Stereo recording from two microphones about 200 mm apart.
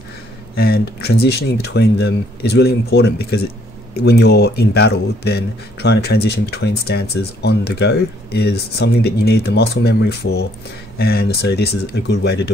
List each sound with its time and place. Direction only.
0.6 s speech: 50° left (ahead or behind)